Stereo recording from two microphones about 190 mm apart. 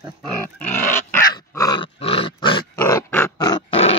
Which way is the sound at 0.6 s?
10° left (ahead or behind).